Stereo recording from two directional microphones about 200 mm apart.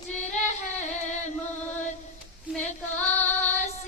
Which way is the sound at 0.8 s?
35° left (ahead or behind).